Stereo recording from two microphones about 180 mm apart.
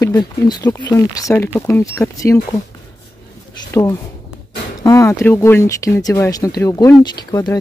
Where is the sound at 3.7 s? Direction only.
15° left (ahead or behind).